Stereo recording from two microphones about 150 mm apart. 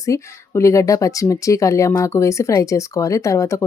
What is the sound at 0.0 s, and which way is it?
Speech, 20° left (ahead or behind).